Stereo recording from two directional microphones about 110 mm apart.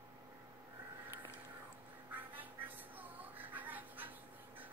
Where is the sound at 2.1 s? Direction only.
15° right (ahead or behind).